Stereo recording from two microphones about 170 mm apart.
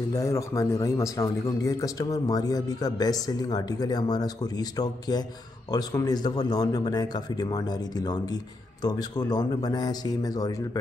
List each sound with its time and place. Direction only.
0.1 s a man's voice: 20° left (ahead or behind)